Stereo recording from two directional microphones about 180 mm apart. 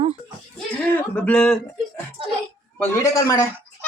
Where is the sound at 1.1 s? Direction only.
5° left (ahead or behind).